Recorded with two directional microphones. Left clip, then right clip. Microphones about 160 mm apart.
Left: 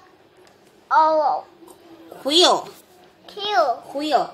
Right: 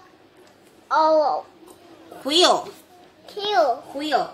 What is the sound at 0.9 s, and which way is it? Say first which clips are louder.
A woman's voice: left 1 dB; 5° left (ahead or behind).